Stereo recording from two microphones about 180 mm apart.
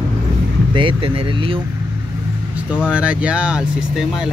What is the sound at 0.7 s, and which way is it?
Speech, 30° right (ahead or behind).